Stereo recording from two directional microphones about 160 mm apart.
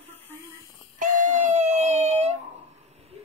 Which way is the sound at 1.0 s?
50° right (ahead or behind).